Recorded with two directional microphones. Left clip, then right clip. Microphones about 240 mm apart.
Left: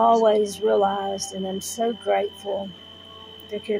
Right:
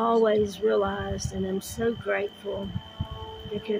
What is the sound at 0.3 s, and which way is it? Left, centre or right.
Speech, centre.